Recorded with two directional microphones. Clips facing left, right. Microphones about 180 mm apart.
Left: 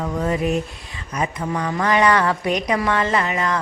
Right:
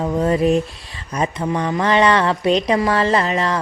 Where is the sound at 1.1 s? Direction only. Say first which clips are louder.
Right 3 dB; 30° right (ahead or behind).